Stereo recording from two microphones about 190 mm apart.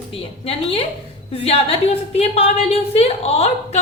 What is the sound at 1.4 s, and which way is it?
A woman's voice, 30° left (ahead or behind).